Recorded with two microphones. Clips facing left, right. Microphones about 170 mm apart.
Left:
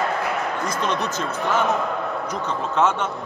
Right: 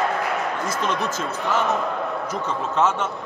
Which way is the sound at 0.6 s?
5° right (ahead or behind).